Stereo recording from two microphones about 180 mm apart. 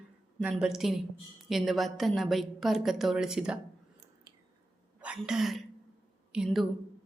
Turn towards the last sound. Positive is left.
turn(degrees=0)  # may be behind; listen again after turning